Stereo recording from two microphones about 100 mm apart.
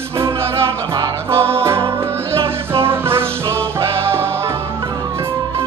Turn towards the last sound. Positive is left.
turn(degrees=-25)  # may be behind; listen again after turning